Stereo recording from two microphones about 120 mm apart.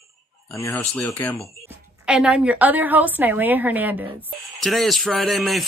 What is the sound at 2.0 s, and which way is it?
A woman's voice, 10° right (ahead or behind).